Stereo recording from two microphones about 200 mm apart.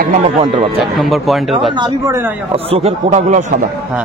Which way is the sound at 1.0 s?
Centre (ahead or behind).